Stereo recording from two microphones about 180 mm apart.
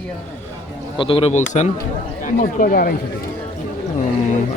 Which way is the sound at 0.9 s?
30° left (ahead or behind).